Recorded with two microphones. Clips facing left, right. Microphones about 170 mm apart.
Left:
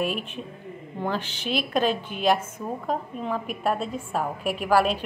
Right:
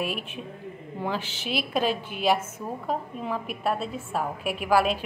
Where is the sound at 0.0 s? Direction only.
5° right (ahead or behind).